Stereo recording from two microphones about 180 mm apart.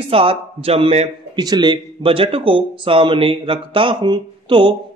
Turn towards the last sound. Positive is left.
turn(degrees=-25)  # may be behind; listen again after turning